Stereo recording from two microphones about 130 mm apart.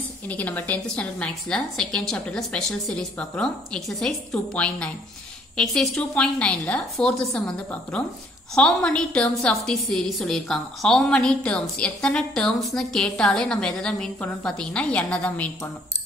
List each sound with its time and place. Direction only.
0.3 s a woman's voice: 10° left (ahead or behind)